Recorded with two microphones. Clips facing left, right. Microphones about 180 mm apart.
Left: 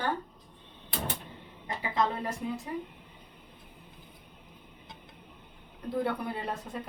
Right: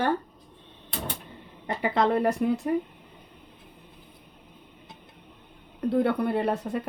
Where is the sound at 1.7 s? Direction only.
65° right (ahead or behind).